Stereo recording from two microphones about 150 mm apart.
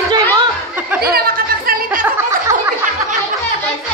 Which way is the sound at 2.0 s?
20° right (ahead or behind).